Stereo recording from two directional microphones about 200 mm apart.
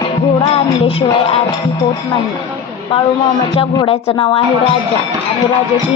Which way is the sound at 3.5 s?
30° left (ahead or behind).